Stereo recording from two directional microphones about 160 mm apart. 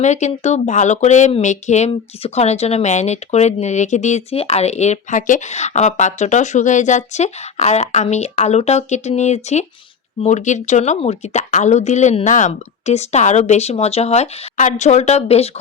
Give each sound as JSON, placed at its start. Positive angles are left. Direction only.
{"t": 0.0, "sound": "speech", "side_deg": 45}